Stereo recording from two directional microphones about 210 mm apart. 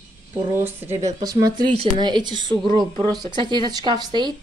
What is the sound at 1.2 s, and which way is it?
Speech, 15° right (ahead or behind).